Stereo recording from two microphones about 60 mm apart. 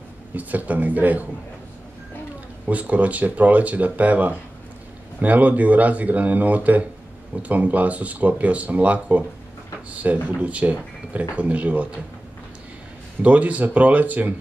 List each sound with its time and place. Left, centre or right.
0.3 s speech: right
2.6 s speech: right
10.2 s speech: right
13.2 s speech: right